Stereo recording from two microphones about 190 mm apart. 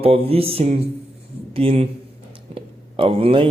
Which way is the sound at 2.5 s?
30° right (ahead or behind).